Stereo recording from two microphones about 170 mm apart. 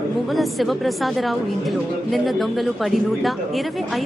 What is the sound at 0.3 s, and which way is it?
Speech, centre (ahead or behind).